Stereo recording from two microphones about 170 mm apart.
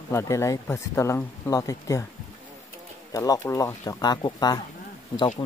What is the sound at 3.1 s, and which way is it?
Speech, 20° left (ahead or behind).